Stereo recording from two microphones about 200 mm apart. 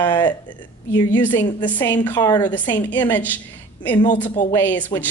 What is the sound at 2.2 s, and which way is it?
Speech, 20° left (ahead or behind).